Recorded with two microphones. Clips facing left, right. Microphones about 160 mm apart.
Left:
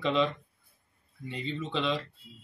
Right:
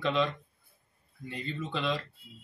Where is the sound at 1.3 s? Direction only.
5° right (ahead or behind).